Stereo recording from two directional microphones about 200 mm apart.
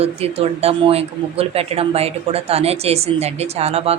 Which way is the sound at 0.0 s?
30° right (ahead or behind).